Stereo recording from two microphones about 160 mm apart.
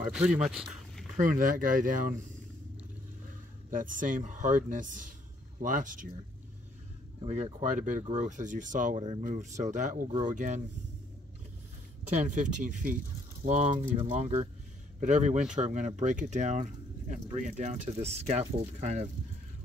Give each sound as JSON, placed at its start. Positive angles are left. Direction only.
{"t": 0.0, "sound": "speech", "side_deg": -5}
{"t": 1.1, "sound": "speech", "side_deg": -55}
{"t": 3.7, "sound": "speech", "side_deg": -55}
{"t": 7.2, "sound": "speech", "side_deg": -35}
{"t": 12.1, "sound": "speech", "side_deg": -50}